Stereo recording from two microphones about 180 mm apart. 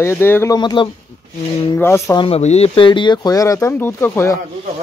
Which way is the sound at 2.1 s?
35° left (ahead or behind).